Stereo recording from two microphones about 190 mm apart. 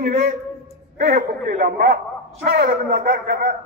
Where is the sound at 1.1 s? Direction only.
45° right (ahead or behind).